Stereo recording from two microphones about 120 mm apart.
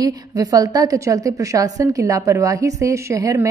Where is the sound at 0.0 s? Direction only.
30° right (ahead or behind).